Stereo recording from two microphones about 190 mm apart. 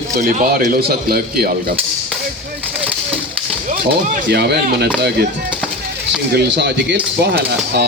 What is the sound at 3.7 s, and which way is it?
Speech, 55° right (ahead or behind).